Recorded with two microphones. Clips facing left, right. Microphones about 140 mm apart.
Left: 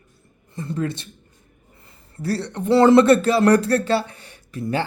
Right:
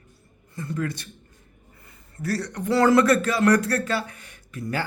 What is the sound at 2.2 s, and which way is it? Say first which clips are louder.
Speech: left 3 dB; 25° left (ahead or behind).